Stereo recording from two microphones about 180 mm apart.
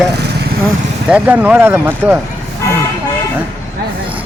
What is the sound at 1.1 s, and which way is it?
Speech, 10° right (ahead or behind).